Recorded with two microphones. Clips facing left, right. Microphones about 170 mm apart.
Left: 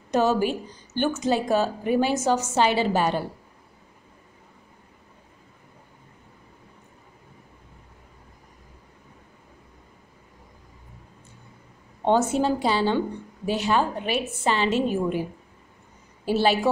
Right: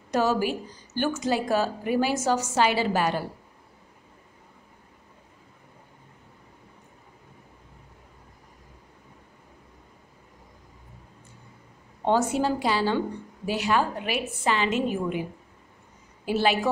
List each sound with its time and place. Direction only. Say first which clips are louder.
0.1 s a woman's voice: left 2 dB; 20° left (ahead or behind)
12.0 s a woman's voice: left 2 dB; 25° left (ahead or behind)
16.3 s a woman's voice: left 2 dB; 30° left (ahead or behind)